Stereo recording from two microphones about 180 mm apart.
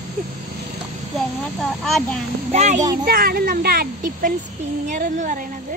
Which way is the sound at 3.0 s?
55° right (ahead or behind).